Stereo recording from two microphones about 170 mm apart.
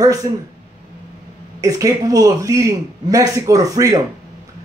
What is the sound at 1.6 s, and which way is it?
A man's voice, 20° right (ahead or behind).